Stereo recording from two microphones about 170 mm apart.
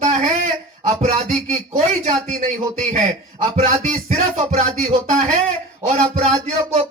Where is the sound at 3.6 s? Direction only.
45° right (ahead or behind).